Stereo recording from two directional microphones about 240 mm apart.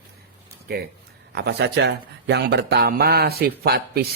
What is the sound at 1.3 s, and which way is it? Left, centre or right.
Speech, right.